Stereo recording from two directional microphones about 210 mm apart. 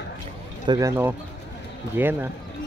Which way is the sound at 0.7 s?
15° right (ahead or behind).